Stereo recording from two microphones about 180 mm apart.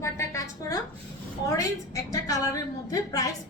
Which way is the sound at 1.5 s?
20° left (ahead or behind).